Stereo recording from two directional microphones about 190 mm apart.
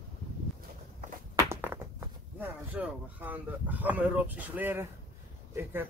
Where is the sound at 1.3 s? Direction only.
10° right (ahead or behind).